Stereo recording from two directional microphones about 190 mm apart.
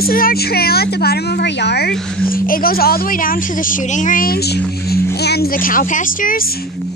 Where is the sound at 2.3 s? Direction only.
50° left (ahead or behind).